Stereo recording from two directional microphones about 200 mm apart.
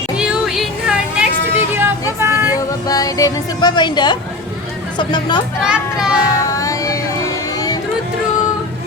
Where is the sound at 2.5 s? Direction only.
15° left (ahead or behind).